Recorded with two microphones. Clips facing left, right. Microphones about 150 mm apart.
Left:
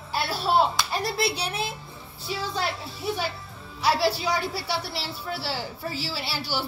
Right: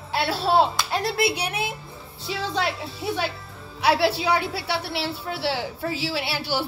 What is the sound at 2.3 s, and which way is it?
Speech, 90° right.